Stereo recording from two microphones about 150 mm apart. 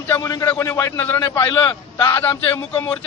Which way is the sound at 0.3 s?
20° left (ahead or behind).